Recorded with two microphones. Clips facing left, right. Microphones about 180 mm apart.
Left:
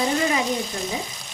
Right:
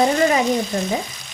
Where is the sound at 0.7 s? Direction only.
65° right (ahead or behind).